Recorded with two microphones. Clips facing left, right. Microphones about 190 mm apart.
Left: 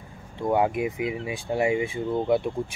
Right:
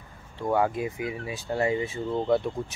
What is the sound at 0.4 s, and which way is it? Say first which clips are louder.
Speech: left 2 dB; 15° left (ahead or behind).